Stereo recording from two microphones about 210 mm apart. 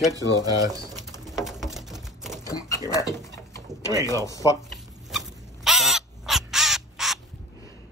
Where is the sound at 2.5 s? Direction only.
15° left (ahead or behind).